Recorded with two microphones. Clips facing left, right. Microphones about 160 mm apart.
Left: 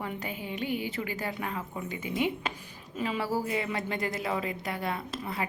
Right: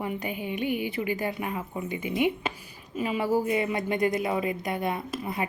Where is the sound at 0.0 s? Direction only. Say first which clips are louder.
Right 4 dB; 15° right (ahead or behind).